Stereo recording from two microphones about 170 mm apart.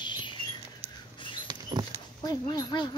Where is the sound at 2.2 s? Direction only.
25° left (ahead or behind).